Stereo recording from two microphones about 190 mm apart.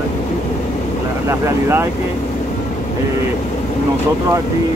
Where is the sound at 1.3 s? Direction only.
15° right (ahead or behind).